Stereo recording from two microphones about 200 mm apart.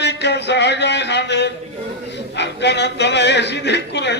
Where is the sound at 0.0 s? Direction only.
60° left (ahead or behind).